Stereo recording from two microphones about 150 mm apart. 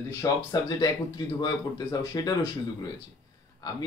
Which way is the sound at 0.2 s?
25° left (ahead or behind).